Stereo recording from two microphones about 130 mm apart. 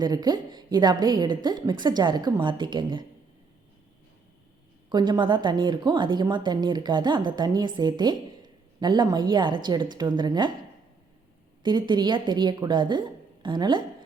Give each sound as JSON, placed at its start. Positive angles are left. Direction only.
{"t": 0.0, "sound": "speech", "side_deg": -30}
{"t": 4.9, "sound": "speech", "side_deg": -35}
{"t": 11.6, "sound": "speech", "side_deg": -35}